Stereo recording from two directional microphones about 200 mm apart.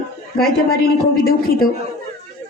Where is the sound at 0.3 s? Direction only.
50° left (ahead or behind).